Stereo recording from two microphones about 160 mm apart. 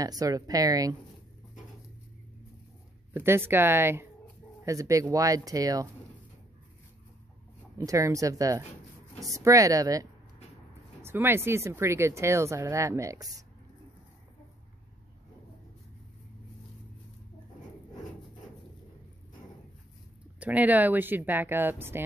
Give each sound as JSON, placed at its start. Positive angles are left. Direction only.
{"t": 0.0, "sound": "speech", "side_deg": -20}
{"t": 3.1, "sound": "speech", "side_deg": -15}
{"t": 7.7, "sound": "speech", "side_deg": -20}
{"t": 20.3, "sound": "speech", "side_deg": -10}